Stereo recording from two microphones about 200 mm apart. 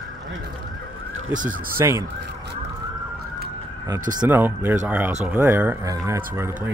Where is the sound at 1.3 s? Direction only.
40° right (ahead or behind).